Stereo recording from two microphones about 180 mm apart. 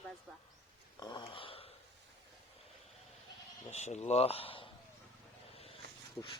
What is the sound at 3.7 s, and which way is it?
Speech, 40° left (ahead or behind).